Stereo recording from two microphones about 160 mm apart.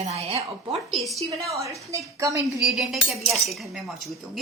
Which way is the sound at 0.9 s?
Centre (ahead or behind).